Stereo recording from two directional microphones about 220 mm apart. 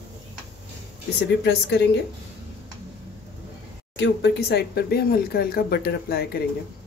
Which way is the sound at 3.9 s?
50° left (ahead or behind).